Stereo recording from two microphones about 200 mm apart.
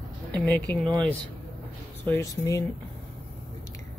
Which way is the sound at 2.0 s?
10° left (ahead or behind).